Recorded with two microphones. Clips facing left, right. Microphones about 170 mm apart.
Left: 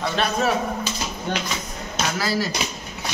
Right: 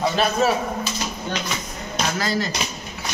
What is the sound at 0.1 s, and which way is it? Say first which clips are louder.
Speech: right 3 dB; centre (ahead or behind).